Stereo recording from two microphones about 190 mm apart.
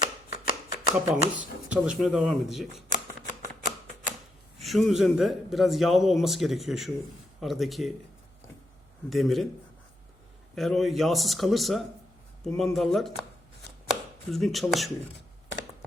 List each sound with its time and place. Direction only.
0.0 s shuffling cards: 35° left (ahead or behind)
1.0 s a man's voice: 5° right (ahead or behind)
4.6 s a man's voice: centre (ahead or behind)
9.0 s a man's voice: centre (ahead or behind)
10.5 s a man's voice: centre (ahead or behind)
14.3 s a man's voice: centre (ahead or behind)